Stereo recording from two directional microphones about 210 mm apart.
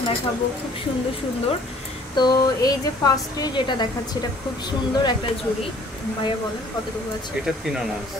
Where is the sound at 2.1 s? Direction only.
20° left (ahead or behind).